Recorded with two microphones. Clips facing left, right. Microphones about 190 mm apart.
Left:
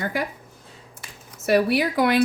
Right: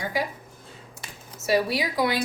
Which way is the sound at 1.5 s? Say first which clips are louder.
Left 4 dB; 60° left (ahead or behind).